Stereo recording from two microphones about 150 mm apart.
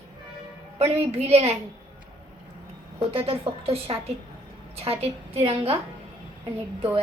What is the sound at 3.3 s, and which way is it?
A child's voice, 40° right (ahead or behind).